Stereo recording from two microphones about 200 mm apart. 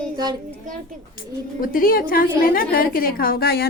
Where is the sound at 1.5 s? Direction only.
45° left (ahead or behind).